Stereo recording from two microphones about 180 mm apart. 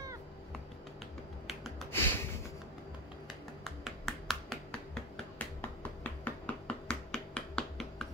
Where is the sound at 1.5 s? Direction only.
Centre (ahead or behind).